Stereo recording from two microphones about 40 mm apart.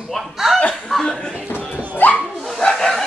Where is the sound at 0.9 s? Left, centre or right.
Centre.